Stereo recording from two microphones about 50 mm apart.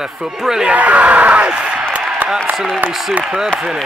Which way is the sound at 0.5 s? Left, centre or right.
Centre.